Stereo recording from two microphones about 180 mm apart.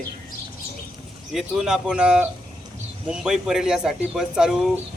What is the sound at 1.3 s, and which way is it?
A man's voice, 5° right (ahead or behind).